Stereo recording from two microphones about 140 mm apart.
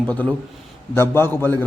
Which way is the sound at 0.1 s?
10° left (ahead or behind).